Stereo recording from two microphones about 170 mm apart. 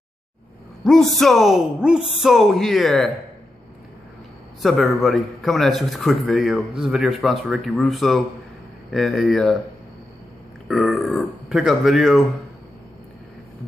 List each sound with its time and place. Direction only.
0.8 s a man's voice: centre (ahead or behind)
4.6 s a man's voice: centre (ahead or behind)
10.7 s a man's voice: centre (ahead or behind)